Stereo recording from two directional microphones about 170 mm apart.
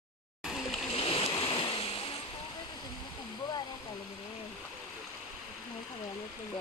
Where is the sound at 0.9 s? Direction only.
35° left (ahead or behind).